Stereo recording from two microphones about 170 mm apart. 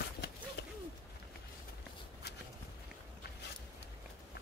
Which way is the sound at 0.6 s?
90° left.